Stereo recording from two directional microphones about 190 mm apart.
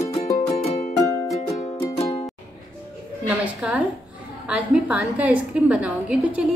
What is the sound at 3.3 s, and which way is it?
A woman's voice, 5° right (ahead or behind).